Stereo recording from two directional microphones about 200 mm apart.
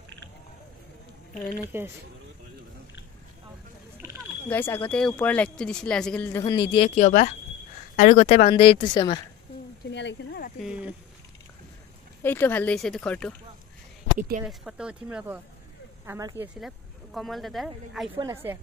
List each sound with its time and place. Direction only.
1.7 s a woman's voice: 10° right (ahead or behind)
4.5 s speech: 10° left (ahead or behind)
7.0 s a woman's voice: 40° left (ahead or behind); by 9.2 s 20° left (ahead or behind)
9.8 s speech: 60° left (ahead or behind)
10.6 s speech: 5° right (ahead or behind)
12.2 s speech: 10° left (ahead or behind)
14.4 s a woman's voice: 5° right (ahead or behind)
16.5 s speech: centre (ahead or behind)
18.1 s a woman's voice: 15° right (ahead or behind)